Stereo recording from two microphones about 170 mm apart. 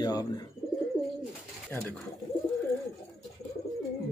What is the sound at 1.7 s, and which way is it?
Speech, 10° left (ahead or behind).